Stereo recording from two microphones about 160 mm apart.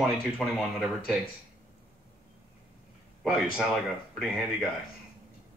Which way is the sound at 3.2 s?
Centre (ahead or behind).